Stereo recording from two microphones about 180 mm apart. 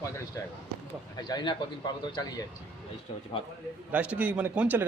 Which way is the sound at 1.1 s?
25° left (ahead or behind).